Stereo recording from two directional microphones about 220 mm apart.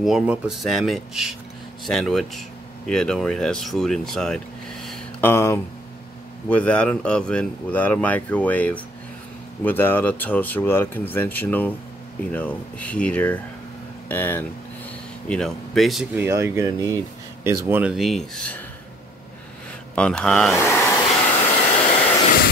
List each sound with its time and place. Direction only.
0.0 s speech: centre (ahead or behind)
4.8 s a sound: 5° left (ahead or behind)
6.5 s speech: 5° left (ahead or behind)
16.3 s speech: 15° right (ahead or behind); by 18.6 s 5° left (ahead or behind)
20.0 s speech: 5° left (ahead or behind)
21.4 s hair dryer: 30° left (ahead or behind)